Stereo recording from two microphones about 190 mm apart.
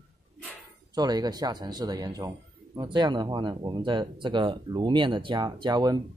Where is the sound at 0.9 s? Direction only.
20° right (ahead or behind).